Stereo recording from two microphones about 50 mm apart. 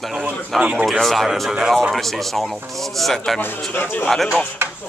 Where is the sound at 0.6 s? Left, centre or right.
Right.